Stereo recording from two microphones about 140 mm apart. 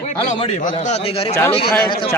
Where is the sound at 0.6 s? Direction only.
60° left (ahead or behind); by 1.3 s 45° left (ahead or behind).